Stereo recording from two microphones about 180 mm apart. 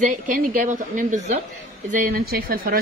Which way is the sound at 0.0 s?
50° right (ahead or behind).